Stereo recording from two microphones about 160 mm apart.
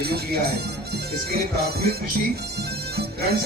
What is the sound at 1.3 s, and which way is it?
Speech, 75° right (ahead or behind).